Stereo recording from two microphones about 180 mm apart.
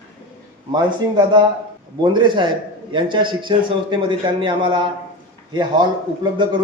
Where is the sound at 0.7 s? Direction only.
25° right (ahead or behind).